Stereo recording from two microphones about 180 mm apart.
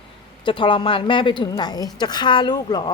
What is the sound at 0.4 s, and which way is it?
A woman's voice, 25° left (ahead or behind).